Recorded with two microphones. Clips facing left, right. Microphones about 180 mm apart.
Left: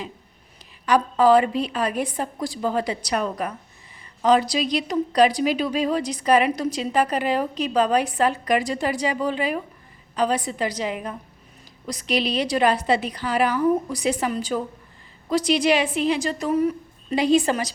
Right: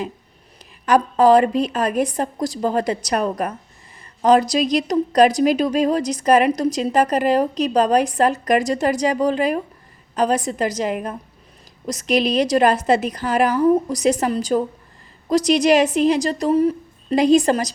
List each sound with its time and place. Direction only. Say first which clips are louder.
0.9 s a woman's voice: right 3 dB; 45° right (ahead or behind)